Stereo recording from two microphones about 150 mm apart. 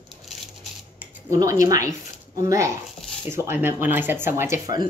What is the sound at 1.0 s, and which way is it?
A woman's voice, 20° right (ahead or behind).